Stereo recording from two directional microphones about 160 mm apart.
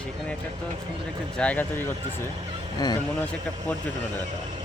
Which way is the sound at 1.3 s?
10° left (ahead or behind).